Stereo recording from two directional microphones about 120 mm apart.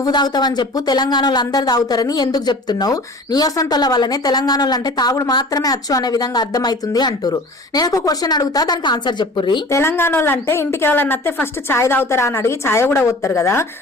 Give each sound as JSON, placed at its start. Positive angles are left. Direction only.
{"t": 0.0, "sound": "speech", "side_deg": 35}
{"t": 9.7, "sound": "a woman's voice", "side_deg": 20}